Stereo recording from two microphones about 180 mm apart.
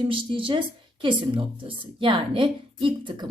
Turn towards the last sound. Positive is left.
turn(degrees=-25)  # may be behind; listen again after turning